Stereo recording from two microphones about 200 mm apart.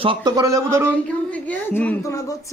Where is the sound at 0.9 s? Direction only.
5° left (ahead or behind).